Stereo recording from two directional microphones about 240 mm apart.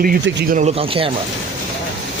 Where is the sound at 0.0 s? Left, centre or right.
Right.